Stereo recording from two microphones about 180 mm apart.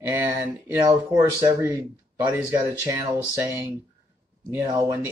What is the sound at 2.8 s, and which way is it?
Speech, 20° right (ahead or behind).